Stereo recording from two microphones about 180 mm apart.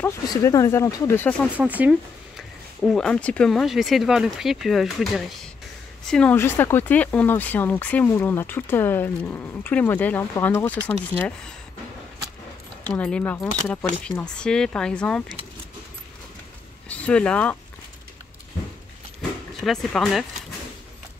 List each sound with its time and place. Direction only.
0.0 s speech: 20° left (ahead or behind)
1.6 s speech: 5° right (ahead or behind)
12.8 s speech: 5° left (ahead or behind)
16.9 s speech: 5° left (ahead or behind)
19.6 s speech: centre (ahead or behind)